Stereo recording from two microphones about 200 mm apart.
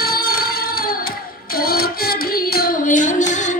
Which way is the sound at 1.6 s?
50° left (ahead or behind).